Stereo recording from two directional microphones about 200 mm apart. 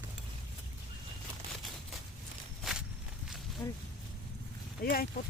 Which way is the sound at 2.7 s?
Centre (ahead or behind).